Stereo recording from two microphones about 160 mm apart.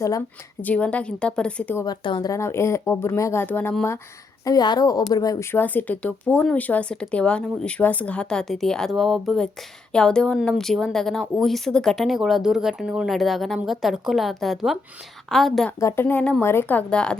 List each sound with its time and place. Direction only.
0.0 s speech: 15° left (ahead or behind)
1.8 s speech: 25° left (ahead or behind)
4.4 s a woman's voice: 25° left (ahead or behind); by 15.7 s centre (ahead or behind)
15.8 s speech: 15° left (ahead or behind)